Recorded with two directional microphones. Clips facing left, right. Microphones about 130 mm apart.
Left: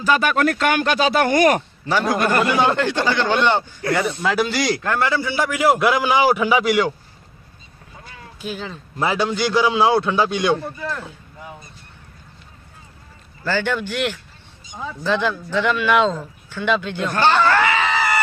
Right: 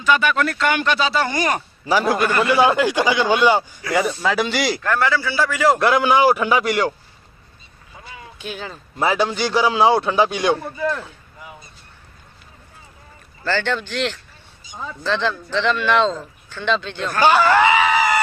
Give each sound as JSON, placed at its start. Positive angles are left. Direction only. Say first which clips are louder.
{"t": 0.0, "sound": "speech", "louder": "left 1 dB", "side_deg": 40}
{"t": 1.9, "sound": "a man's voice", "louder": "right 1 dB", "side_deg": -5}
{"t": 4.8, "sound": "speech", "louder": "right 1 dB", "side_deg": 20}
{"t": 8.4, "sound": "a man's voice", "louder": "left 2 dB", "side_deg": 0}
{"t": 13.4, "sound": "speech", "louder": "even", "side_deg": 10}
{"t": 17.2, "sound": "screaming", "louder": "right 2 dB", "side_deg": -10}